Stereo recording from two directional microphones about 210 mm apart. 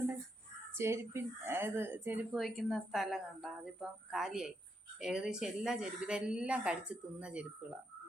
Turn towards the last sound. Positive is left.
turn(degrees=-5)  # may be behind; listen again after turning